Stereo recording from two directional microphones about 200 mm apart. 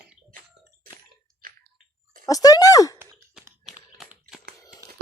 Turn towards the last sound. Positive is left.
turn(degrees=0)  # may be behind; listen again after turning